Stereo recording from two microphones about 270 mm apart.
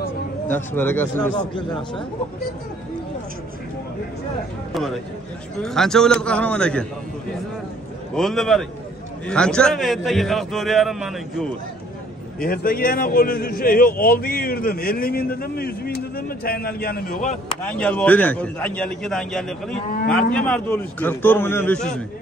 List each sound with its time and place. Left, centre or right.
0.5 s speech: centre
5.6 s a man's voice: centre
8.1 s a man's voice: centre
12.4 s a man's voice: left
17.6 s a man's voice: centre